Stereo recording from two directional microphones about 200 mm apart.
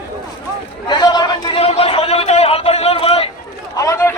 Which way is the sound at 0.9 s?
20° left (ahead or behind).